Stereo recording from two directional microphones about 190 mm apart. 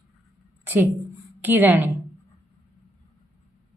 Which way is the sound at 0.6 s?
10° right (ahead or behind).